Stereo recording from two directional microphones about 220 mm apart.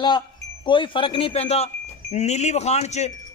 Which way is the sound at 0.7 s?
20° left (ahead or behind).